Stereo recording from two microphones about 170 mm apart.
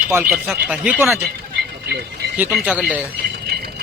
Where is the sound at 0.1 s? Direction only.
15° right (ahead or behind).